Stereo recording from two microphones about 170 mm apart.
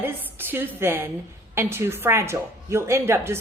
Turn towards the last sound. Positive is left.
turn(degrees=-15)  # may be behind; listen again after turning